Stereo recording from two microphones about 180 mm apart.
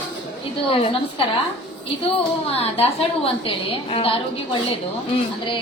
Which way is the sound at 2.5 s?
35° left (ahead or behind).